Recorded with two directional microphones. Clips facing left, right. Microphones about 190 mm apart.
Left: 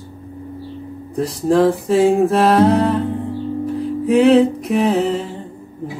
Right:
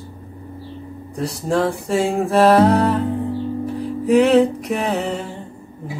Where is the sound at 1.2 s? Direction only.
Centre (ahead or behind).